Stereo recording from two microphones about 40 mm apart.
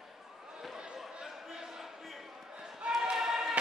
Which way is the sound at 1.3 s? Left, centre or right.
Centre.